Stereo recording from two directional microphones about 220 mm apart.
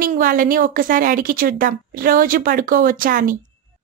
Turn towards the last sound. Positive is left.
turn(degrees=-40)  # may be behind; listen again after turning